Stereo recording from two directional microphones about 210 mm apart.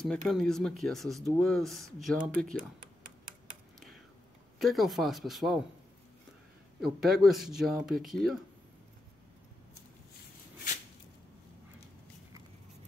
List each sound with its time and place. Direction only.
0.0 s speech: 5° left (ahead or behind)
4.6 s speech: centre (ahead or behind)
6.8 s speech: centre (ahead or behind)